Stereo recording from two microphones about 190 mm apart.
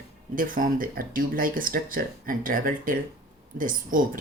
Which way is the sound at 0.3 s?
45° right (ahead or behind).